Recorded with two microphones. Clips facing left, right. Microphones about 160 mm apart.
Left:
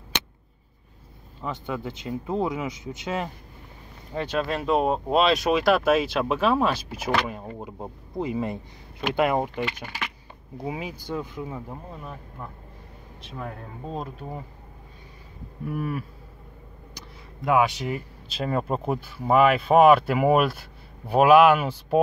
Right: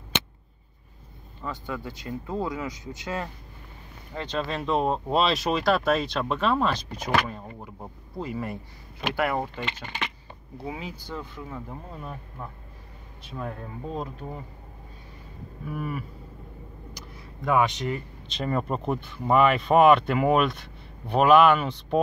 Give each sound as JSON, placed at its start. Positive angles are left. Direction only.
{"t": 1.4, "sound": "speech", "side_deg": 20}
{"t": 7.2, "sound": "speech", "side_deg": 15}
{"t": 9.6, "sound": "speech", "side_deg": 10}
{"t": 12.0, "sound": "speech", "side_deg": -5}
{"t": 17.5, "sound": "speech", "side_deg": 5}